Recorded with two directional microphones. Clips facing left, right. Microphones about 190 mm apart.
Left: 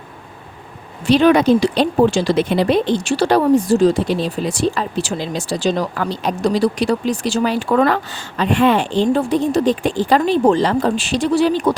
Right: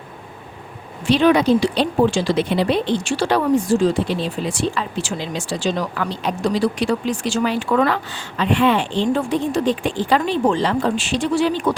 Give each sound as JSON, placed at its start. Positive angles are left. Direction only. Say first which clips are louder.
{"t": 1.0, "sound": "speech", "louder": "left 3 dB", "side_deg": 45}